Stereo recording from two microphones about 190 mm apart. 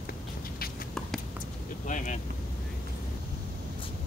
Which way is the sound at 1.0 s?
5° left (ahead or behind).